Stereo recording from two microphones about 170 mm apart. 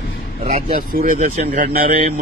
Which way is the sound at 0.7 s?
55° right (ahead or behind).